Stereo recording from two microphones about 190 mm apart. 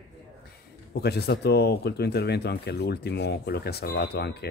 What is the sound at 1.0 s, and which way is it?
Speech, 60° left (ahead or behind).